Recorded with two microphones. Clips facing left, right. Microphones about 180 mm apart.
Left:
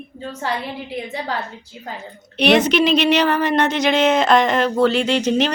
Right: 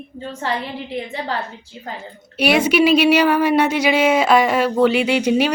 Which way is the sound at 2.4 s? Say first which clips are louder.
Even; 10° right (ahead or behind).